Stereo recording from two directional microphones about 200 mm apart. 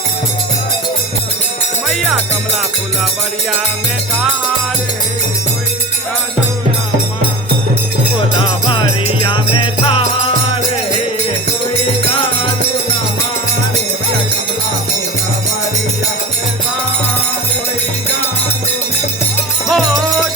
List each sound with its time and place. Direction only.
8.6 s jingle bell: 25° left (ahead or behind)
19.6 s music: centre (ahead or behind)